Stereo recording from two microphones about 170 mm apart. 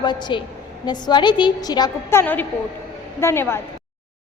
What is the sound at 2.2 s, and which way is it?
Speech, 10° left (ahead or behind).